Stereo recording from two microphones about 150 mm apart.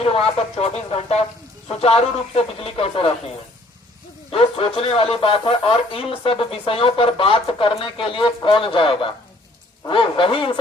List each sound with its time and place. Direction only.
0.6 s speech: 40° left (ahead or behind)
4.3 s speech: 40° left (ahead or behind)